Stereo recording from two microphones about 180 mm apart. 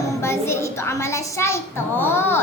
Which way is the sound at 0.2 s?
15° left (ahead or behind).